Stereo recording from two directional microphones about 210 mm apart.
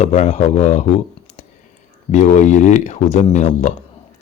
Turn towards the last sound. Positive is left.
turn(degrees=35)  # may be behind; listen again after turning